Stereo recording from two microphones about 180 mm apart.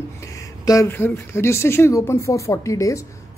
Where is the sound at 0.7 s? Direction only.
15° left (ahead or behind).